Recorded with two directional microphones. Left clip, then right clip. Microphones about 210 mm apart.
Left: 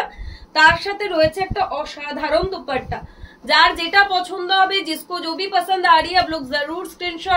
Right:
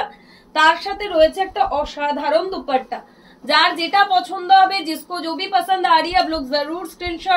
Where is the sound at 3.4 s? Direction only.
15° left (ahead or behind).